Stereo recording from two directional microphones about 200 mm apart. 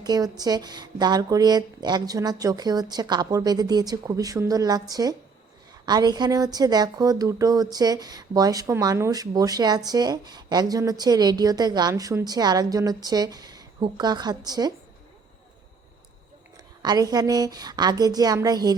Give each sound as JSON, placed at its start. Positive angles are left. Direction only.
{"t": 0.0, "sound": "speech", "side_deg": -20}
{"t": 16.8, "sound": "speech", "side_deg": -20}